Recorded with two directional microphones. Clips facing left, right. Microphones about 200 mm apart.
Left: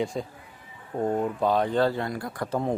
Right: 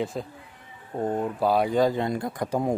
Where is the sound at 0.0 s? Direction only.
Centre (ahead or behind).